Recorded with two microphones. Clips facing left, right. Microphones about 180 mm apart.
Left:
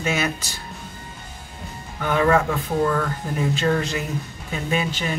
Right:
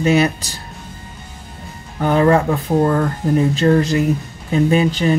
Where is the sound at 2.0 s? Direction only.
35° right (ahead or behind).